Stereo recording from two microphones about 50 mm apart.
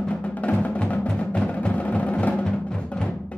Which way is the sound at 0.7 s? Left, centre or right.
Left.